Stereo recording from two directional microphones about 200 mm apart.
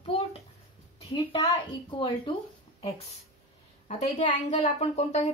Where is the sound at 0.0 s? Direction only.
30° left (ahead or behind).